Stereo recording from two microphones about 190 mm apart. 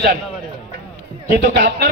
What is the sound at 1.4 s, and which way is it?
Speech, 55° right (ahead or behind).